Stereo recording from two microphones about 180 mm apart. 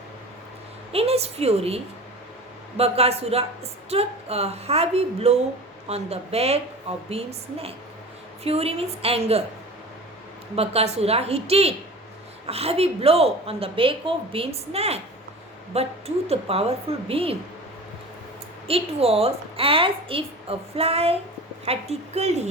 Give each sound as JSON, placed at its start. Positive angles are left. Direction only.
{"t": 0.9, "sound": "speech", "side_deg": -35}
{"t": 10.5, "sound": "speech", "side_deg": -35}
{"t": 18.7, "sound": "speech", "side_deg": -35}